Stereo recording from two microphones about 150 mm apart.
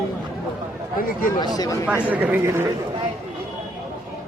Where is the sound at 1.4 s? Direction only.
25° left (ahead or behind).